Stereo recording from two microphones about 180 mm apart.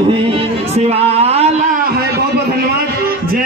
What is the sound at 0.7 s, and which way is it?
Speech, 35° right (ahead or behind).